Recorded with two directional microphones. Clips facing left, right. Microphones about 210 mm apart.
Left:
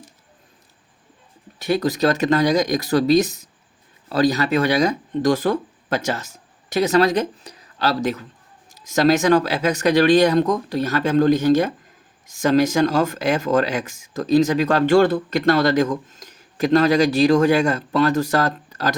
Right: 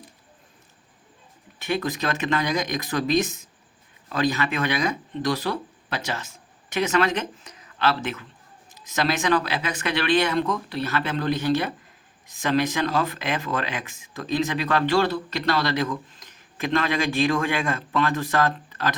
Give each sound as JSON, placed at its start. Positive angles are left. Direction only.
{"t": 1.5, "sound": "speech", "side_deg": 40}